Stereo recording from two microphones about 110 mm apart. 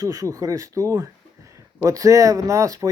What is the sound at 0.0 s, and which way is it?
Speech, 30° right (ahead or behind).